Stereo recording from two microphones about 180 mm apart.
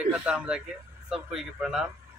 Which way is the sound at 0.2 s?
5° right (ahead or behind).